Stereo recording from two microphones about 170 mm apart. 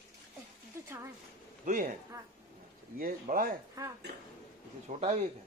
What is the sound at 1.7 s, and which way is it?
Speech, 50° right (ahead or behind).